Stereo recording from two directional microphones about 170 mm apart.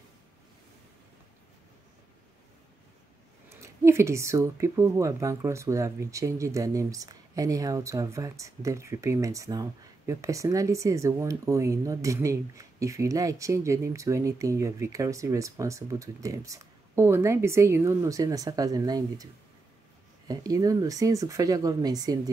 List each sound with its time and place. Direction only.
3.6 s speech: 15° right (ahead or behind)
20.2 s speech: 20° right (ahead or behind)